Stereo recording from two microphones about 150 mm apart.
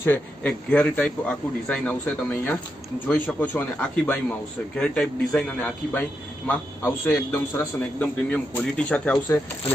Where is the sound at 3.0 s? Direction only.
10° left (ahead or behind).